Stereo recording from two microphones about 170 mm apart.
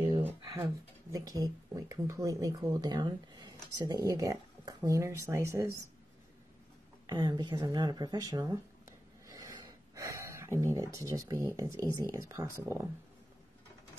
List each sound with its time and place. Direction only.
1.1 s speech: 20° right (ahead or behind)
7.1 s speech: 25° right (ahead or behind)
8.8 s gasp: 20° right (ahead or behind)